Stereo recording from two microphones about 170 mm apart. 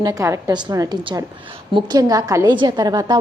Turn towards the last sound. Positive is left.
turn(degrees=-25)  # may be behind; listen again after turning